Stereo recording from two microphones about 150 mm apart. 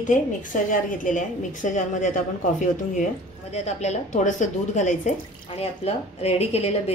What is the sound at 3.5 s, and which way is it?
A woman's voice, 50° left (ahead or behind).